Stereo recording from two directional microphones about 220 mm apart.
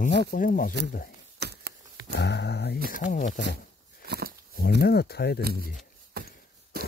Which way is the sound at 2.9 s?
35° left (ahead or behind).